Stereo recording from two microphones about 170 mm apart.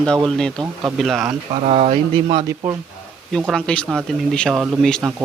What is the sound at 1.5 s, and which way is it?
Speech, 40° right (ahead or behind).